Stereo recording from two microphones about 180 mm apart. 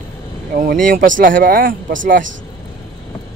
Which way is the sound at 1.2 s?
50° right (ahead or behind).